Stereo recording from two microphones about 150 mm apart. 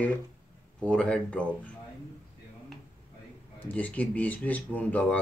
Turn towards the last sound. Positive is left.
turn(degrees=10)  # may be behind; listen again after turning